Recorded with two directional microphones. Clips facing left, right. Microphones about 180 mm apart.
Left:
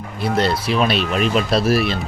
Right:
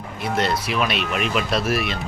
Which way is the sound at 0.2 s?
35° left (ahead or behind).